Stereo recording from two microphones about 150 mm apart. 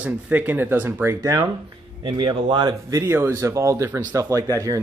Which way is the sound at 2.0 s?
30° right (ahead or behind).